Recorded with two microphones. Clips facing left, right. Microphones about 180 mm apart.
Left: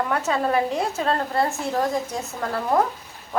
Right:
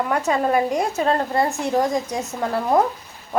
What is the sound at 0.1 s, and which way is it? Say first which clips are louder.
A woman's voice: right 3 dB; 10° right (ahead or behind).